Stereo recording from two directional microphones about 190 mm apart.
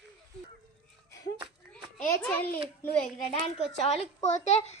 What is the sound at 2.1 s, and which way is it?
Speech, 10° left (ahead or behind).